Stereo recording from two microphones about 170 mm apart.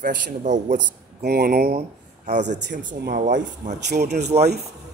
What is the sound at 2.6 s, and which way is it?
Speech, 90° right.